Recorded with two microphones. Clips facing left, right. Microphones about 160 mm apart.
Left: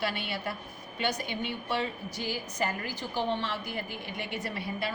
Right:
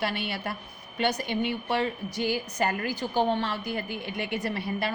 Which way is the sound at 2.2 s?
65° right (ahead or behind).